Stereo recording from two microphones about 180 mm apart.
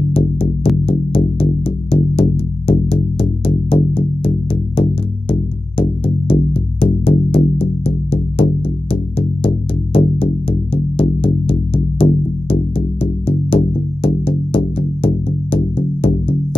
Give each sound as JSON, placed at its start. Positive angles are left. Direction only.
{"t": 0.8, "sound": "music", "side_deg": 30}
{"t": 5.8, "sound": "music", "side_deg": 30}
{"t": 9.9, "sound": "music", "side_deg": 30}